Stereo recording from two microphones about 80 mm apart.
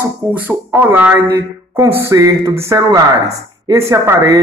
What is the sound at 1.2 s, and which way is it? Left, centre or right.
Speech, right.